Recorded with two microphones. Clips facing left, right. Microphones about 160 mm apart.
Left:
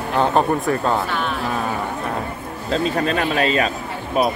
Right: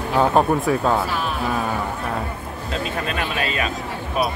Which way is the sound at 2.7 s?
35° left (ahead or behind).